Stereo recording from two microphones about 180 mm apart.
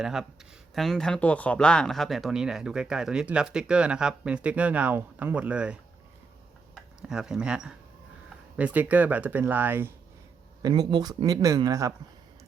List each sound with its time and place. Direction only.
0.0 s speech: 5° right (ahead or behind)
7.1 s speech: 5° right (ahead or behind)
10.6 s a man's voice: 25° right (ahead or behind)